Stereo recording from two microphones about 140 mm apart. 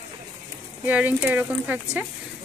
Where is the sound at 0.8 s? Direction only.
10° right (ahead or behind).